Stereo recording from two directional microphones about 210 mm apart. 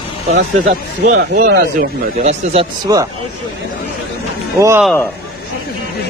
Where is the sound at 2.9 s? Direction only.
15° right (ahead or behind).